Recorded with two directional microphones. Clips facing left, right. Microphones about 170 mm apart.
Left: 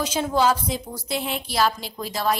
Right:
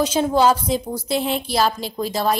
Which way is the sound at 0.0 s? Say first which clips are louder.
Right 5 dB; 30° right (ahead or behind).